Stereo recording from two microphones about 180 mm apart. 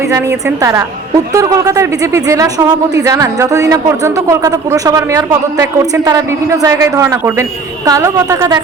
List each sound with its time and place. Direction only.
0.1 s a woman's voice: 15° right (ahead or behind)